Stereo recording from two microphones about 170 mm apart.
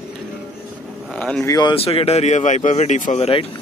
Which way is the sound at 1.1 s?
5° left (ahead or behind).